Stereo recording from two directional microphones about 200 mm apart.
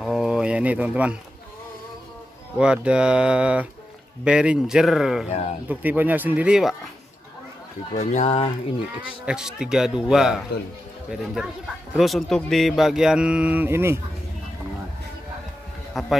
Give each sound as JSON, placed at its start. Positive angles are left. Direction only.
{"t": 0.0, "sound": "a sound", "side_deg": 0}
{"t": 2.5, "sound": "speech", "side_deg": -5}
{"t": 5.3, "sound": "speech", "side_deg": 35}
{"t": 5.7, "sound": "speech", "side_deg": -10}
{"t": 7.9, "sound": "speech", "side_deg": 35}
{"t": 9.2, "sound": "speech", "side_deg": -5}
{"t": 16.0, "sound": "a man's voice", "side_deg": 0}